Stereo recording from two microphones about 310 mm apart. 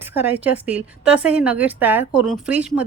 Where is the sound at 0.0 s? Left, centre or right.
Centre.